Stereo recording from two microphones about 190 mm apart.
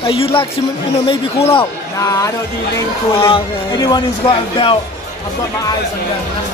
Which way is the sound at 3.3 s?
20° left (ahead or behind).